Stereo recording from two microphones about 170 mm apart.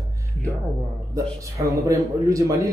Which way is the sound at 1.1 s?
20° right (ahead or behind).